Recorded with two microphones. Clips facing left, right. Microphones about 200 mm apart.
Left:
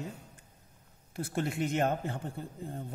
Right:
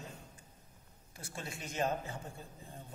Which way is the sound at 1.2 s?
60° left (ahead or behind).